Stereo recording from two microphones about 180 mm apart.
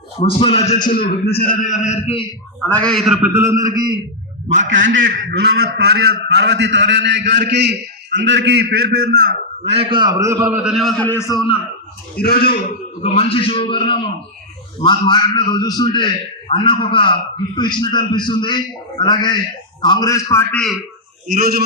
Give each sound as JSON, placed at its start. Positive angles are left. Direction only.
{"t": 0.2, "sound": "a man's voice", "side_deg": 30}
{"t": 1.4, "sound": "a man's voice", "side_deg": 50}
{"t": 2.6, "sound": "a man's voice", "side_deg": 5}
{"t": 3.2, "sound": "a man's voice", "side_deg": -10}
{"t": 4.6, "sound": "a man's voice", "side_deg": -90}
{"t": 9.6, "sound": "a man's voice", "side_deg": -30}
{"t": 12.1, "sound": "a man's voice", "side_deg": 55}
{"t": 13.0, "sound": "a man's voice", "side_deg": 35}
{"t": 21.2, "sound": "speech", "side_deg": -55}